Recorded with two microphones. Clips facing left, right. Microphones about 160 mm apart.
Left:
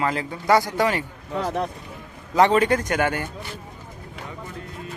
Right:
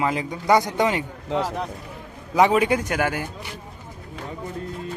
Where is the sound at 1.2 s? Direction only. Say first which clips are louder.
Right 3 dB; 85° right.